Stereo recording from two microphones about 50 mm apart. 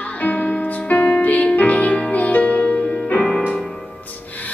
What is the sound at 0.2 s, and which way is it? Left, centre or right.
Music, left.